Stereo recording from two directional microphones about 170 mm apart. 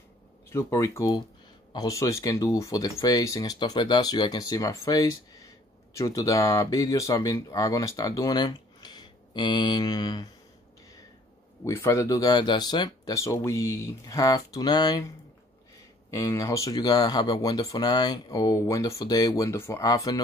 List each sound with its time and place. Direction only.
0.5 s speech: 15° left (ahead or behind)
11.6 s speech: 15° left (ahead or behind)
16.1 s speech: 15° left (ahead or behind)